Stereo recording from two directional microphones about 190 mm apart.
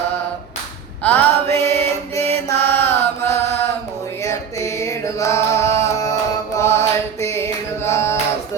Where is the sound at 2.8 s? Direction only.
15° left (ahead or behind).